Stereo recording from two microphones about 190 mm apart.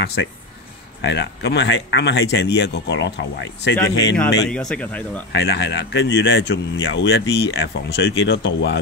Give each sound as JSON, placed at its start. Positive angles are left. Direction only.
{"t": 0.0, "sound": "speech", "side_deg": 60}
{"t": 4.2, "sound": "speech", "side_deg": 5}
{"t": 5.3, "sound": "speech", "side_deg": 60}